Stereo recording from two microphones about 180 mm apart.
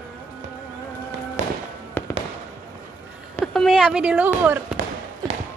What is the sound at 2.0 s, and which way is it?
Fireworks, 10° left (ahead or behind).